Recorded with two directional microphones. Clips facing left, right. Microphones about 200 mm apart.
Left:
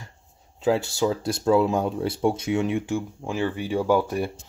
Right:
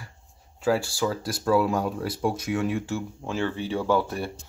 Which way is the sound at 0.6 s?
20° left (ahead or behind).